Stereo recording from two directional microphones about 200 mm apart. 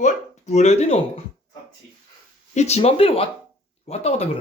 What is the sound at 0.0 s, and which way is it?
Speech, 35° left (ahead or behind).